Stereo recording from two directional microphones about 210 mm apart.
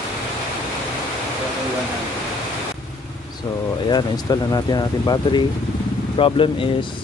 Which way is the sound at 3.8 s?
20° left (ahead or behind).